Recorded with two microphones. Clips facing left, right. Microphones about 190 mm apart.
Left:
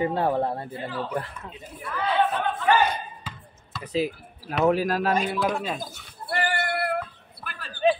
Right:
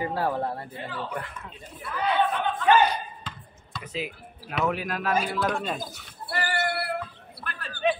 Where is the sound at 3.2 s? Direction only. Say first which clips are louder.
Left 1 dB; 5° left (ahead or behind).